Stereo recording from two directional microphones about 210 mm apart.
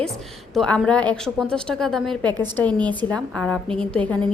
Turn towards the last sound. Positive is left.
turn(degrees=5)  # may be behind; listen again after turning